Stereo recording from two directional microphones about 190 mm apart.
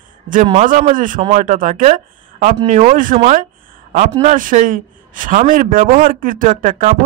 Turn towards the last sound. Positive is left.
turn(degrees=-45)  # may be behind; listen again after turning